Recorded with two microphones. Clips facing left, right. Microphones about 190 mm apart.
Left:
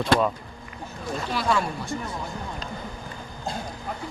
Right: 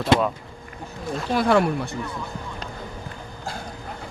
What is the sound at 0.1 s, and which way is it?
Speech, 20° right (ahead or behind).